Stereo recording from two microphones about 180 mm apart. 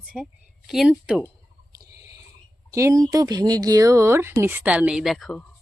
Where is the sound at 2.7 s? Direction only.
15° right (ahead or behind).